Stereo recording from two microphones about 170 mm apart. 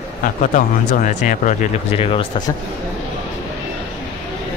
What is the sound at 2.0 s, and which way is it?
Speech, 30° left (ahead or behind).